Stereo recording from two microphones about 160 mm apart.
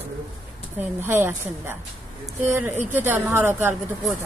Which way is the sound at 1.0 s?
15° right (ahead or behind).